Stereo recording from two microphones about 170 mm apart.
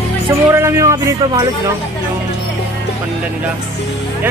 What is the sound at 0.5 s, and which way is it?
Speech, 15° right (ahead or behind).